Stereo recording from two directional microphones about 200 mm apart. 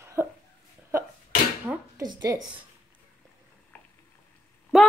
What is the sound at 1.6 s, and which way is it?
Dishes, 10° right (ahead or behind).